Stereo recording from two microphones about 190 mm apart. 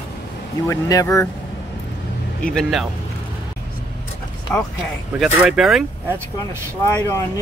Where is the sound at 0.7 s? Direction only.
15° left (ahead or behind).